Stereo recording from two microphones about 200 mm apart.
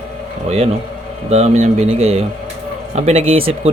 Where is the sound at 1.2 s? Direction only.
30° right (ahead or behind).